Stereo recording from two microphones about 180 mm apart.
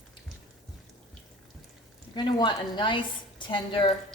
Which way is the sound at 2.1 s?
25° left (ahead or behind).